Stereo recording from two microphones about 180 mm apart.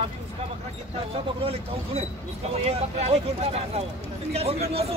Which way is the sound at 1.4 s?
35° right (ahead or behind).